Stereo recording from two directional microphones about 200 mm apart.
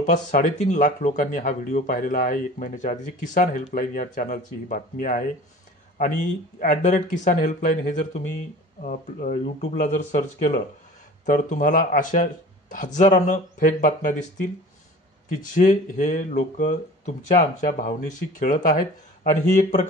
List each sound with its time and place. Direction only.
0.0 s speech: 40° left (ahead or behind)
15.2 s speech: 40° left (ahead or behind)